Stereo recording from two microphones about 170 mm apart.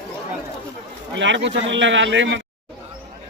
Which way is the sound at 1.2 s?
90° right.